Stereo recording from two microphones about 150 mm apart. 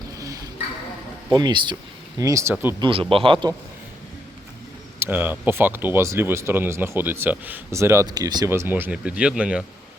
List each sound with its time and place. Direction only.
1.3 s speech: 30° right (ahead or behind)
2.7 s a man's voice: 35° right (ahead or behind)
4.9 s speech: 15° right (ahead or behind)